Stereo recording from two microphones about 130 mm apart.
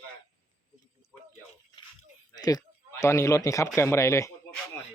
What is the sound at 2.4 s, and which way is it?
A man's voice, 30° left (ahead or behind).